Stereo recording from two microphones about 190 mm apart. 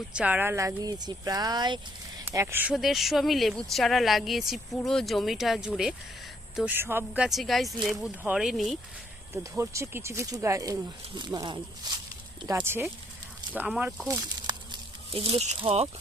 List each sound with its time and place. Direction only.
0.1 s speech: 5° right (ahead or behind)
9.3 s speech: 15° right (ahead or behind)
14.4 s a sound: 25° right (ahead or behind)